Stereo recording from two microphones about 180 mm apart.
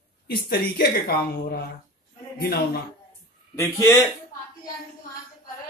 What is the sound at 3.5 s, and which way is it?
Speech, 15° left (ahead or behind).